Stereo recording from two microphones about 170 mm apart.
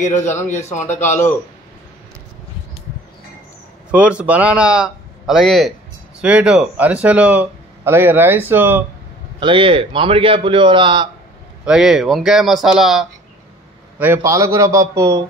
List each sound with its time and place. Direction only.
0.5 s speech: 45° left (ahead or behind)
3.9 s a man's voice: 5° right (ahead or behind)
9.4 s a man's voice: 30° right (ahead or behind)
11.6 s a man's voice: 5° right (ahead or behind); by 15.2 s 20° right (ahead or behind)